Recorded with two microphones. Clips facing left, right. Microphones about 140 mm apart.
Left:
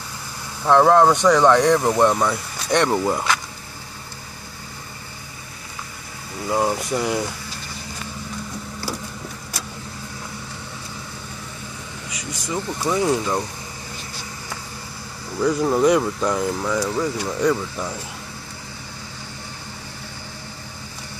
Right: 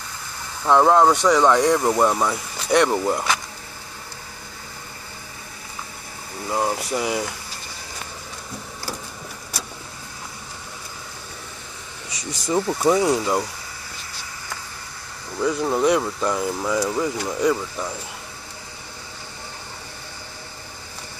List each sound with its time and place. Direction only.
0.7 s speech: 5° right (ahead or behind)
6.5 s speech: centre (ahead or behind)
12.5 s speech: 20° right (ahead or behind)
15.3 s speech: centre (ahead or behind)